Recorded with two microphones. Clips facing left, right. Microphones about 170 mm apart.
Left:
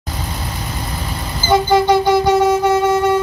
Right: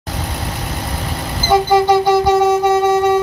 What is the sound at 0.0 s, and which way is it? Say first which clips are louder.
Vehicle: right 2 dB; 75° right (ahead or behind).